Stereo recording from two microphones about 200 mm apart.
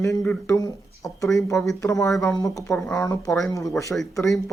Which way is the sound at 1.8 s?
15° left (ahead or behind).